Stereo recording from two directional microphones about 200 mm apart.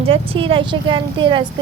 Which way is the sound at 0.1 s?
25° right (ahead or behind).